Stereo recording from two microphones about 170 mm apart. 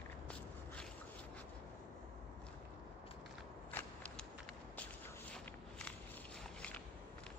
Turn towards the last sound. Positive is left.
turn(degrees=5)  # may be behind; listen again after turning